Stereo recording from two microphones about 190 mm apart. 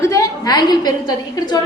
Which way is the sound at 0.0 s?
15° left (ahead or behind).